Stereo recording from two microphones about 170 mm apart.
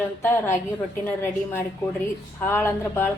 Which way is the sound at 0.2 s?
10° left (ahead or behind).